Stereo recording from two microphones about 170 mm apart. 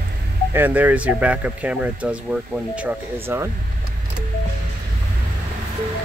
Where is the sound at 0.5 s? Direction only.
10° right (ahead or behind).